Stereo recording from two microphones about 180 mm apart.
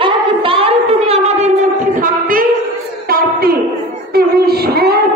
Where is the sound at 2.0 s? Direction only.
50° right (ahead or behind).